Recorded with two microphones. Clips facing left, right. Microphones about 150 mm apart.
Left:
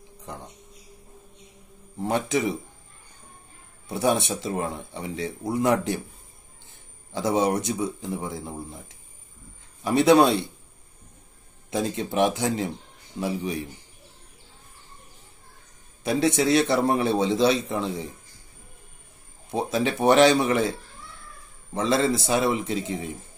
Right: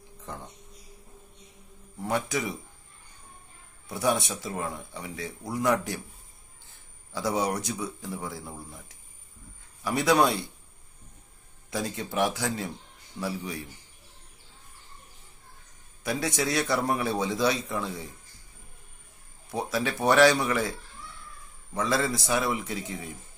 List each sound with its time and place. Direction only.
0.2 s a sound: 15° left (ahead or behind)
2.0 s a man's voice: 25° left (ahead or behind)
3.9 s a man's voice: 25° left (ahead or behind)
7.1 s a man's voice: 20° left (ahead or behind)
11.7 s a man's voice: 20° left (ahead or behind)
16.0 s a man's voice: 25° left (ahead or behind)
19.5 s a man's voice: 25° left (ahead or behind)
21.7 s a man's voice: 25° left (ahead or behind)